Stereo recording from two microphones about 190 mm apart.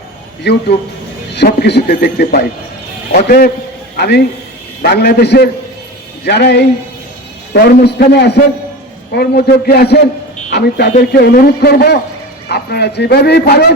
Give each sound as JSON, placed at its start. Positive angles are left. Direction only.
{"t": 0.4, "sound": "a man's voice", "side_deg": 60}